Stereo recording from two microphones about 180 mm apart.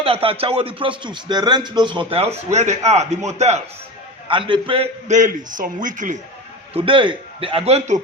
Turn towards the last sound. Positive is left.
turn(degrees=-35)  # may be behind; listen again after turning